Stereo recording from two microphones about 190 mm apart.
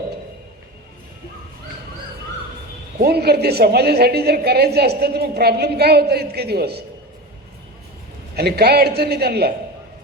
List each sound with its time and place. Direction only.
3.0 s a woman's voice: 55° right (ahead or behind)
8.4 s a woman's voice: 55° right (ahead or behind)